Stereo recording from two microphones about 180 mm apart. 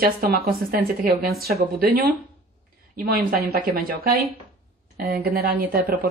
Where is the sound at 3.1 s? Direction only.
55° right (ahead or behind).